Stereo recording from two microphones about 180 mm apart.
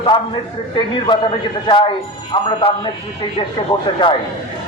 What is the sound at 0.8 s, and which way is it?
Speech, 25° left (ahead or behind).